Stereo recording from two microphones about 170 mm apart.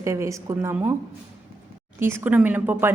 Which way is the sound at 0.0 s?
15° right (ahead or behind).